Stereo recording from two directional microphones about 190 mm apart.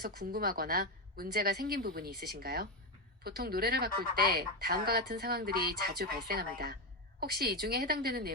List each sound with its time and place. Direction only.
0.0 s a woman's voice: 50° right (ahead or behind)